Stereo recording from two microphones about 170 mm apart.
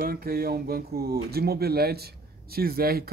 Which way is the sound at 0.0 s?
60° right (ahead or behind).